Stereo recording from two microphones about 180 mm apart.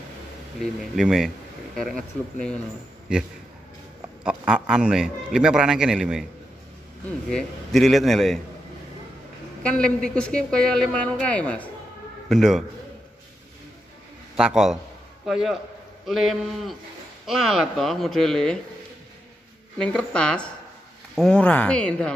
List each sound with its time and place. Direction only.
0.6 s a man's voice: centre (ahead or behind)
4.2 s a man's voice: 5° right (ahead or behind)
7.2 s a man's voice: centre (ahead or behind)
9.6 s a man's voice: 5° left (ahead or behind)
14.3 s a man's voice: 5° right (ahead or behind)
19.8 s a man's voice: 5° left (ahead or behind)